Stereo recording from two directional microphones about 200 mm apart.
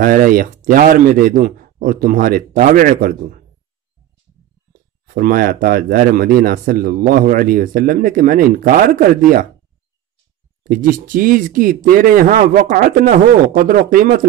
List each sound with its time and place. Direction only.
0.0 s speech: 45° right (ahead or behind)
5.0 s speech: 45° right (ahead or behind)
10.6 s speech: 45° right (ahead or behind)